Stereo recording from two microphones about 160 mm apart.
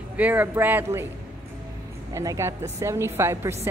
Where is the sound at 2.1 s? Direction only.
20° right (ahead or behind).